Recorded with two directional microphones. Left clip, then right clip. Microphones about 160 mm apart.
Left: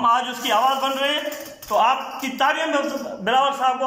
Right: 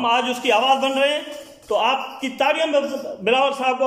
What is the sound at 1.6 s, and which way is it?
A man's voice, 30° right (ahead or behind).